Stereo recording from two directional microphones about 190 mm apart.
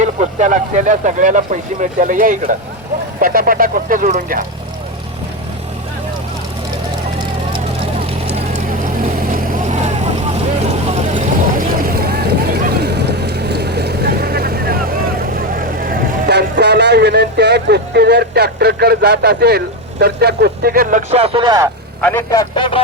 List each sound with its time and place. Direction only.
0.0 s speech: 40° right (ahead or behind)
7.5 s vehicle: 30° right (ahead or behind)
8.5 s vehicle: 45° right (ahead or behind)
15.5 s speech: 50° right (ahead or behind)
21.1 s speech: 30° right (ahead or behind)
22.0 s speech: 15° left (ahead or behind)